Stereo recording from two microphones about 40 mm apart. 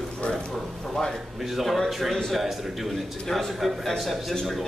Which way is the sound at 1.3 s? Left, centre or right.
Centre.